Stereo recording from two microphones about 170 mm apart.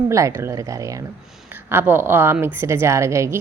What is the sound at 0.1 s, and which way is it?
A woman's voice, 15° right (ahead or behind).